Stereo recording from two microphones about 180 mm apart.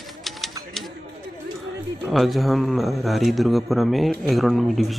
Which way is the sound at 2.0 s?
Centre (ahead or behind).